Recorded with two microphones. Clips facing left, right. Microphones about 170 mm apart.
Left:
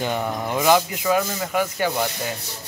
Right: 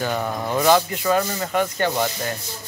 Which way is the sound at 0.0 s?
15° left (ahead or behind).